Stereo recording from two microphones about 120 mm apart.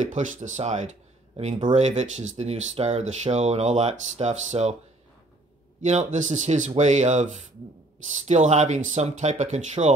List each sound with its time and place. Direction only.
0.0 s speech: 90° right
1.8 s speech: 70° right (ahead or behind)
5.9 s speech: 90° right
8.3 s speech: 75° right (ahead or behind)